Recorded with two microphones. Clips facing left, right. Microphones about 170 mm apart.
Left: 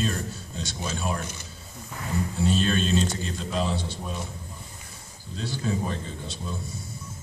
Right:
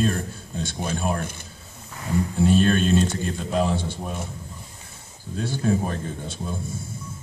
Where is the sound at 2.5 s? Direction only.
55° right (ahead or behind).